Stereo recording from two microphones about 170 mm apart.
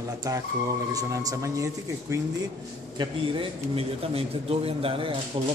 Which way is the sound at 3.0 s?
30° right (ahead or behind).